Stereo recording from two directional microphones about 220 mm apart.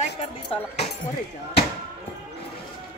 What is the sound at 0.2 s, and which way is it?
Speech, 25° left (ahead or behind).